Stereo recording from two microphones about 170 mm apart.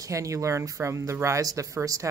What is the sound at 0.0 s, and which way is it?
A woman's voice, 20° right (ahead or behind).